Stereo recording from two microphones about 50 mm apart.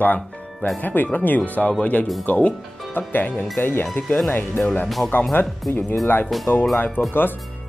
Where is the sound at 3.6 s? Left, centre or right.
Left.